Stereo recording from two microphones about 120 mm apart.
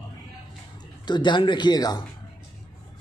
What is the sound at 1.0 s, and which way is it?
Speech, 40° left (ahead or behind).